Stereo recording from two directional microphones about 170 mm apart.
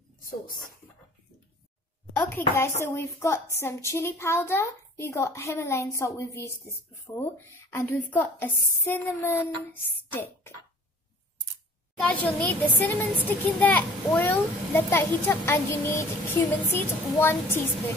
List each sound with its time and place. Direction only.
2.1 s a child's voice: 15° left (ahead or behind)
12.0 s a child's voice: 10° left (ahead or behind)